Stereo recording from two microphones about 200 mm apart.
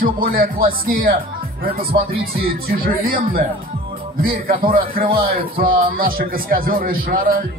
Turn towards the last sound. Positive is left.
turn(degrees=-45)  # may be behind; listen again after turning